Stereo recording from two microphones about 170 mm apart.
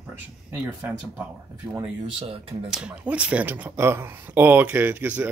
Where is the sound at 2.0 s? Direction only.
35° right (ahead or behind).